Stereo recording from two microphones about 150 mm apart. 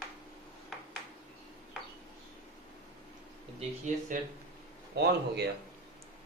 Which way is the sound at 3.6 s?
55° right (ahead or behind).